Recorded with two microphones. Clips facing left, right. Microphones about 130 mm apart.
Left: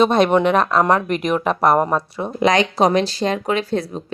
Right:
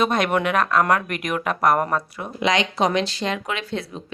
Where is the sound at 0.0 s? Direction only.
30° left (ahead or behind).